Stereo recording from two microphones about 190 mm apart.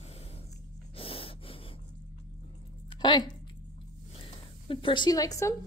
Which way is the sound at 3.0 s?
25° left (ahead or behind).